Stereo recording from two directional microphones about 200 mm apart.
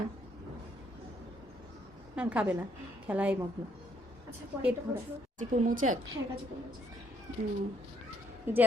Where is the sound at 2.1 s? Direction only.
5° right (ahead or behind).